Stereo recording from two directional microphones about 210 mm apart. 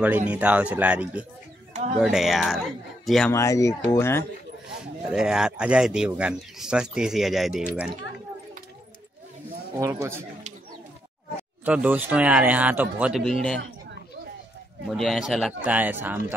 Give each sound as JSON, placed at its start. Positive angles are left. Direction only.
{"t": 0.0, "sound": "speech", "side_deg": -5}
{"t": 1.7, "sound": "a sound", "side_deg": -35}
{"t": 2.0, "sound": "speech", "side_deg": 0}
{"t": 3.3, "sound": "speech", "side_deg": 15}
{"t": 5.1, "sound": "speech", "side_deg": -5}
{"t": 9.8, "sound": "speech", "side_deg": -15}
{"t": 11.6, "sound": "speech", "side_deg": -5}
{"t": 14.9, "sound": "speech", "side_deg": 0}